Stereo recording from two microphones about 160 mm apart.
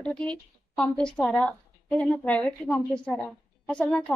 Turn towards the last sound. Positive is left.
turn(degrees=5)  # may be behind; listen again after turning